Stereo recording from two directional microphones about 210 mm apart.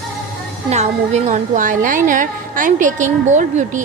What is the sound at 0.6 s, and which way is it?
A woman's voice, 30° right (ahead or behind).